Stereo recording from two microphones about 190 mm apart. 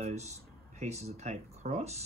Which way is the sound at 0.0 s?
35° right (ahead or behind).